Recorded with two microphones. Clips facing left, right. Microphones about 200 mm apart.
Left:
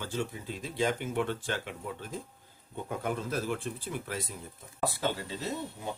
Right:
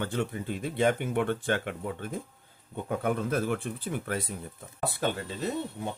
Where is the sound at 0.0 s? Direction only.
60° right (ahead or behind).